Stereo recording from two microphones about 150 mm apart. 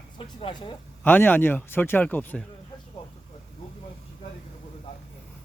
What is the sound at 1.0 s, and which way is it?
Speech, 15° left (ahead or behind).